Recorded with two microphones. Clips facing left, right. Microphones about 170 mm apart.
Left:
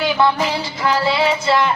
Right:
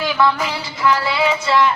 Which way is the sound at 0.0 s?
30° left (ahead or behind).